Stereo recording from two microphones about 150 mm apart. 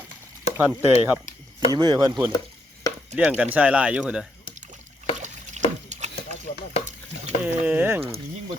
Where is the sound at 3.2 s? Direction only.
10° right (ahead or behind).